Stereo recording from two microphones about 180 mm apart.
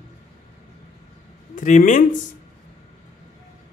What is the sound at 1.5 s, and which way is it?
Speech, 45° left (ahead or behind).